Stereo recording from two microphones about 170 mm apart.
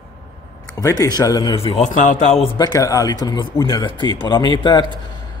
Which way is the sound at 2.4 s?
25° left (ahead or behind).